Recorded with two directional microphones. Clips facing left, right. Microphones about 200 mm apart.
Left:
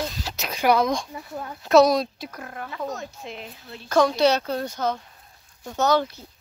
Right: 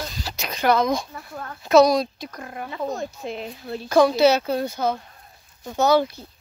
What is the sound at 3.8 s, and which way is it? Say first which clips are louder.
Speech: right 3 dB; 10° right (ahead or behind).